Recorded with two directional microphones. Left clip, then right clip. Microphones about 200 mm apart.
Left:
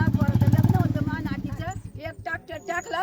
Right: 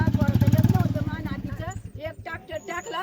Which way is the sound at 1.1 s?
5° left (ahead or behind).